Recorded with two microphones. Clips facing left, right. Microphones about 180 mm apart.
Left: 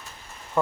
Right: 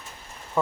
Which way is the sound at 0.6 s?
5° right (ahead or behind).